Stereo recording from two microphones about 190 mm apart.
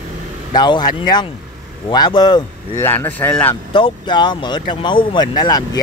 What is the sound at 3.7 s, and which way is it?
Speech, 25° left (ahead or behind).